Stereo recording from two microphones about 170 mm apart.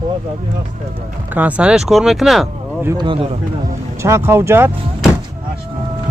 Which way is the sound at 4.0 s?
15° right (ahead or behind).